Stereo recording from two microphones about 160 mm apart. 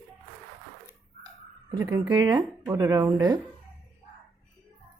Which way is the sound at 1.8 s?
20° right (ahead or behind).